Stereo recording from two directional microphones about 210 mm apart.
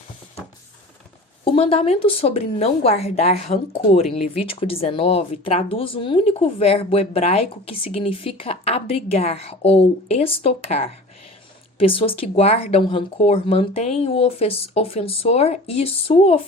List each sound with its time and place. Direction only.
1.5 s speech: 25° left (ahead or behind)
11.8 s speech: 25° left (ahead or behind)